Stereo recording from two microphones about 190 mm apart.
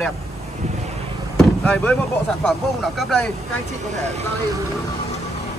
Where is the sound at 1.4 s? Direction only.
5° left (ahead or behind).